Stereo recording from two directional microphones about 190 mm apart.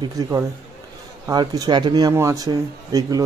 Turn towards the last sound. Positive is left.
turn(degrees=-20)  # may be behind; listen again after turning